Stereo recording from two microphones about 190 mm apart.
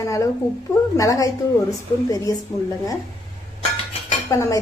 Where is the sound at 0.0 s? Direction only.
15° left (ahead or behind).